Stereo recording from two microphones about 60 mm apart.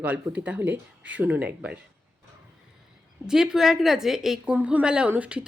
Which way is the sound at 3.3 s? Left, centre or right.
Centre.